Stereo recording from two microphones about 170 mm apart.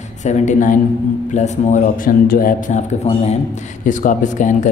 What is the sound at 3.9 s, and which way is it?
Speech, 50° left (ahead or behind).